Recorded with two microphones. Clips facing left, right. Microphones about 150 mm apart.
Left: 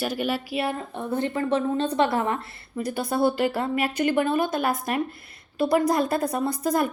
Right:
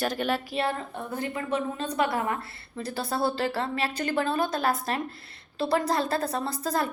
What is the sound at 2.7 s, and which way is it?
Speech, 15° left (ahead or behind).